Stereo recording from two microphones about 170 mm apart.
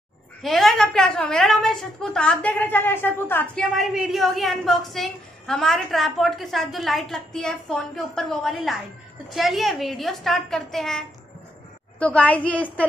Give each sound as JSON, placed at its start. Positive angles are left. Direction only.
{"t": 0.4, "sound": "a woman's voice", "side_deg": 0}
{"t": 3.7, "sound": "a woman's voice", "side_deg": 0}